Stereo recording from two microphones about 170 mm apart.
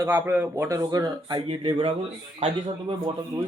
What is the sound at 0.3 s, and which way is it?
Speech, 10° right (ahead or behind).